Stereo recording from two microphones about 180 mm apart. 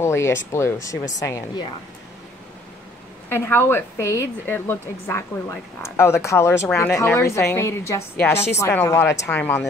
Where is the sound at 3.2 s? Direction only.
10° left (ahead or behind).